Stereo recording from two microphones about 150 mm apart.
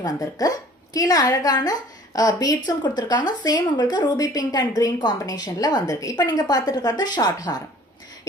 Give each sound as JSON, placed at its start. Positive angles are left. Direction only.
{"t": 0.0, "sound": "a woman's voice", "side_deg": 25}